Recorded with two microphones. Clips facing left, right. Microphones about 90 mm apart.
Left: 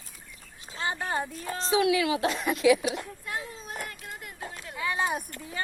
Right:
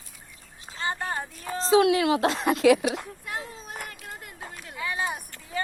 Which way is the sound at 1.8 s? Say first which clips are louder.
Right 3 dB; 50° right (ahead or behind).